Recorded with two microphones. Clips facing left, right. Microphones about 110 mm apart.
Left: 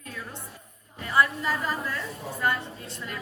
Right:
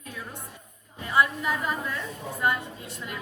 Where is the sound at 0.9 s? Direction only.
20° right (ahead or behind).